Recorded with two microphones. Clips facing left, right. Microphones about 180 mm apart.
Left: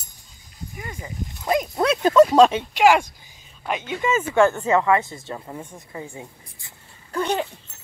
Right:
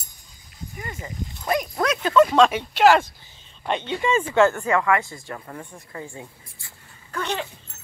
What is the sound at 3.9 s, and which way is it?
Speech, 30° right (ahead or behind).